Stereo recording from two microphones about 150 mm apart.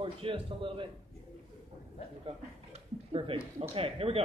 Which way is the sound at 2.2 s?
40° right (ahead or behind).